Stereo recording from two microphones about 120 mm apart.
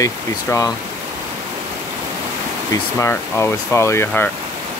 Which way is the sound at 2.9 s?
20° left (ahead or behind).